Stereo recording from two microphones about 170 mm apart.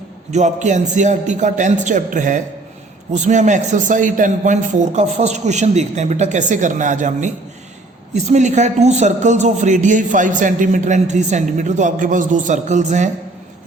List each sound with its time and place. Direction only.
0.3 s a man's voice: 45° right (ahead or behind)